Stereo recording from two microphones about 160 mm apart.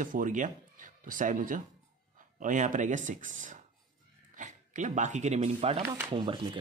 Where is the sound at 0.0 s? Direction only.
55° right (ahead or behind).